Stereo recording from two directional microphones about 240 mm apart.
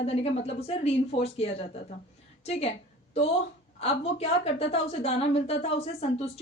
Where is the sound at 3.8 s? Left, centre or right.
Left.